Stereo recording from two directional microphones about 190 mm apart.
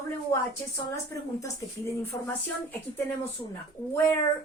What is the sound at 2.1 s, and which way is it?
Speech, 20° left (ahead or behind).